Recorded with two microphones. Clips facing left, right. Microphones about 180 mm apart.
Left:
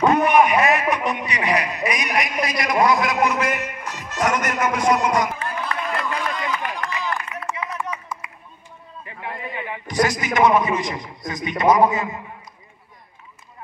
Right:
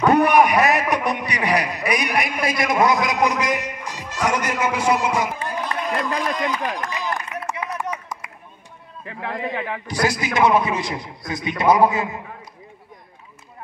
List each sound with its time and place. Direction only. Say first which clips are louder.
0.1 s a man's voice: right 1 dB; 35° right (ahead or behind); by 5.7 s 10° right (ahead or behind)
5.9 s a sound: right 4 dB; 40° right (ahead or behind)
9.0 s a man's voice: right 5 dB; 90° right
10.0 s a man's voice: right 1 dB; 10° right (ahead or behind)
10.7 s a man's voice: left 1 dB; 35° right (ahead or behind)
11.5 s a man's voice: even; 10° right (ahead or behind)